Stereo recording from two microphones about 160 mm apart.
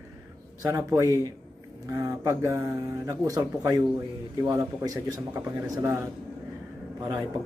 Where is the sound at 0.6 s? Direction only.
20° right (ahead or behind).